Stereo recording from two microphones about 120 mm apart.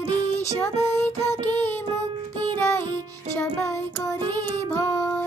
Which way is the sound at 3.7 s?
25° left (ahead or behind).